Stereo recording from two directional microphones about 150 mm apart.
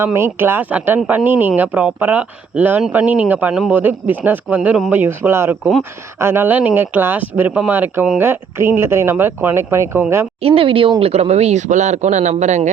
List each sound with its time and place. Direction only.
0.0 s speech: 15° right (ahead or behind)
10.4 s a man's voice: 40° right (ahead or behind)